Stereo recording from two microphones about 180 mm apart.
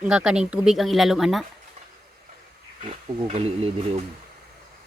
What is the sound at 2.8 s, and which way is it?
Speech, 35° right (ahead or behind).